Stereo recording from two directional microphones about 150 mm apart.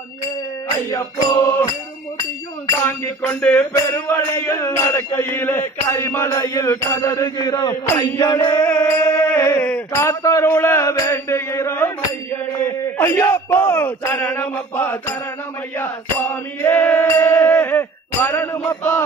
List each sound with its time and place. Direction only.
0.8 s music: 25° left (ahead or behind)
2.8 s mantra: 10° left (ahead or behind)
8.2 s music: 25° left (ahead or behind)
9.7 s mantra: 20° left (ahead or behind)